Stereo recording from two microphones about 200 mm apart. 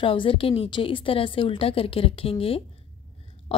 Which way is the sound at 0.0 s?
25° left (ahead or behind).